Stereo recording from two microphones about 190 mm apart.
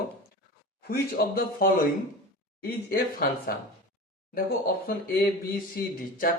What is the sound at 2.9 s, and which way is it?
A man's voice, 50° left (ahead or behind).